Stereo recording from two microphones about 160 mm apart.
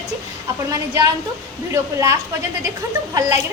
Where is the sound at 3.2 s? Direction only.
20° right (ahead or behind).